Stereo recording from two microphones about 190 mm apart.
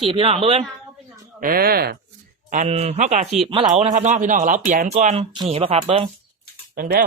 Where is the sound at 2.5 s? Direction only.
40° right (ahead or behind).